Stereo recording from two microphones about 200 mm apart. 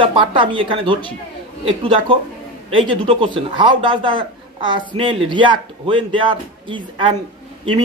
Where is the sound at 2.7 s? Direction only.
25° right (ahead or behind).